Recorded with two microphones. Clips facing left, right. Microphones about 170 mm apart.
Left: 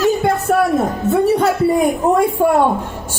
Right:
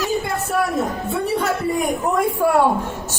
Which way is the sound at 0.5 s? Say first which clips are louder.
Left 5 dB; 55° left (ahead or behind).